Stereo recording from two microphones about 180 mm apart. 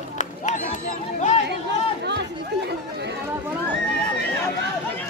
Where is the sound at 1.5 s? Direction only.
70° right (ahead or behind).